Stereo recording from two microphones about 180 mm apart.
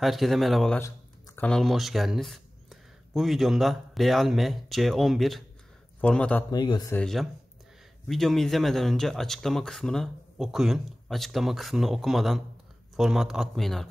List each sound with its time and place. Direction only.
0.0 s speech: centre (ahead or behind)
0.7 s speech: 10° left (ahead or behind)
6.5 s a man's voice: 25° left (ahead or behind)
6.9 s speech: 5° left (ahead or behind)